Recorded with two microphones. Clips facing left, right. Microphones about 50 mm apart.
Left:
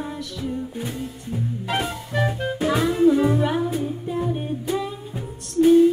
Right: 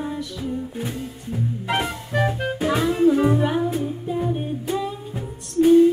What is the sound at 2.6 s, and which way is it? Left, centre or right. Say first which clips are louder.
Music: even; centre.